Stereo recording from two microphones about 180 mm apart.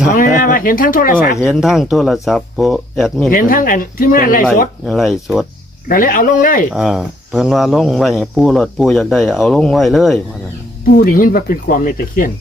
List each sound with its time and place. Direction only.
0.3 s speech: 50° left (ahead or behind)
1.4 s speech: centre (ahead or behind)
3.2 s speech: 50° left (ahead or behind)
4.9 s speech: centre (ahead or behind)
5.9 s speech: 50° left (ahead or behind)
6.7 s speech: centre (ahead or behind)
10.9 s speech: 50° left (ahead or behind)